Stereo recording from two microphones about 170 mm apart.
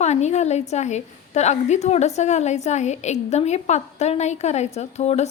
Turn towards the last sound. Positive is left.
turn(degrees=40)  # may be behind; listen again after turning